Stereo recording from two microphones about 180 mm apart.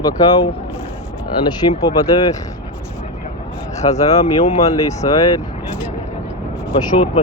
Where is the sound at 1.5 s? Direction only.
20° left (ahead or behind).